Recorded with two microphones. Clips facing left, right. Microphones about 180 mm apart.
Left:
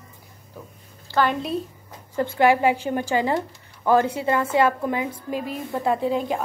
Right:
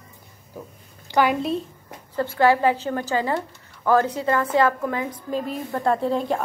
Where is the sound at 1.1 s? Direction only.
15° right (ahead or behind).